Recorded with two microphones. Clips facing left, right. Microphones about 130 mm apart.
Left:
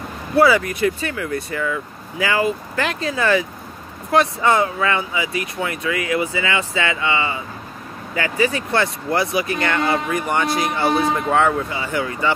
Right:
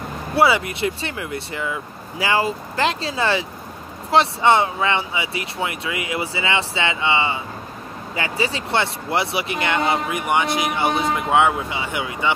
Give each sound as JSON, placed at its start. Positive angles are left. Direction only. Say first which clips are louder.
{"t": 0.4, "sound": "speech", "louder": "left 3 dB", "side_deg": -25}